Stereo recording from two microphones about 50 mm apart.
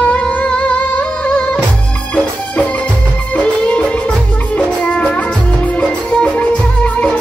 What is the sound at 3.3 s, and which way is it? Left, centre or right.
Music, left.